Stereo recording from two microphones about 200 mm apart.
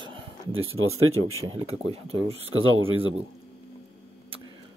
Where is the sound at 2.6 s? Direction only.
90° right.